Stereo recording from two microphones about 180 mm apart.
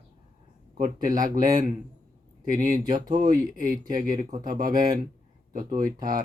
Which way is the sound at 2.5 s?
50° right (ahead or behind).